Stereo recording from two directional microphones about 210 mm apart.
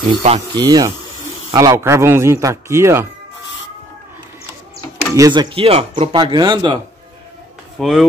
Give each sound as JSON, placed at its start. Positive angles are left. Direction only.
{"t": 0.2, "sound": "speech", "side_deg": -25}
{"t": 5.1, "sound": "speech", "side_deg": -20}
{"t": 7.8, "sound": "speech", "side_deg": 0}